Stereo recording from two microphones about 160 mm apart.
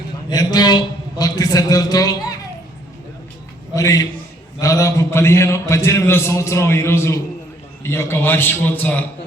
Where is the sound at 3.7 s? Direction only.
20° left (ahead or behind).